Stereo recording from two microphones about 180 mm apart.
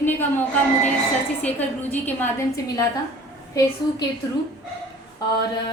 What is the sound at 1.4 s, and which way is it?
A woman's voice, 10° left (ahead or behind).